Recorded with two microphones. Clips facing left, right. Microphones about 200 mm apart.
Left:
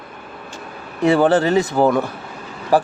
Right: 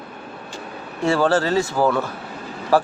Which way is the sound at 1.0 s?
20° left (ahead or behind).